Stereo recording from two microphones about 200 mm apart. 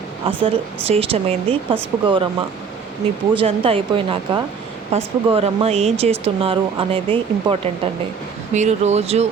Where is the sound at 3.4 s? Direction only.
25° right (ahead or behind).